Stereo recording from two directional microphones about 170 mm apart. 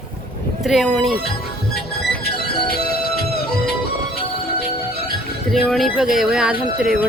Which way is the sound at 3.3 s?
65° left (ahead or behind).